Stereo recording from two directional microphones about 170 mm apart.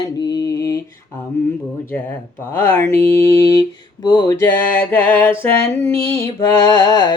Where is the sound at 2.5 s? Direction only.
15° left (ahead or behind).